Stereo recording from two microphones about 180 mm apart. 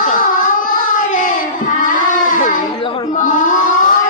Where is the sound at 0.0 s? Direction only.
45° left (ahead or behind).